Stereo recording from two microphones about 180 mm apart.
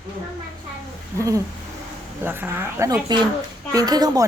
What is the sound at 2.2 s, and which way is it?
A woman's voice, 10° right (ahead or behind).